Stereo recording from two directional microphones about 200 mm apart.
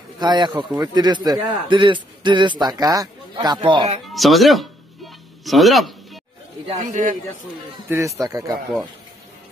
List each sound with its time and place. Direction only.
0.2 s a man's voice: 20° right (ahead or behind)
4.1 s music: centre (ahead or behind)
6.8 s a man's voice: 40° right (ahead or behind)
7.9 s speech: 15° right (ahead or behind)